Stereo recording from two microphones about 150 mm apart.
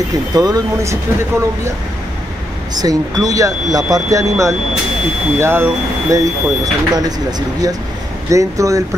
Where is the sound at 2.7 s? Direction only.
25° right (ahead or behind).